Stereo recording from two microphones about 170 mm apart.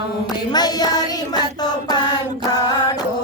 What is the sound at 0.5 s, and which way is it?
Child singing, 25° left (ahead or behind).